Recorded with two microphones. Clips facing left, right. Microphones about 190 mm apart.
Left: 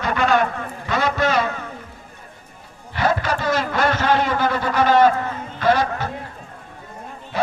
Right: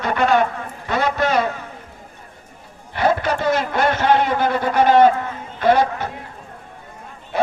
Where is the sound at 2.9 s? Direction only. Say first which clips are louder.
Right 2 dB; 55° right (ahead or behind).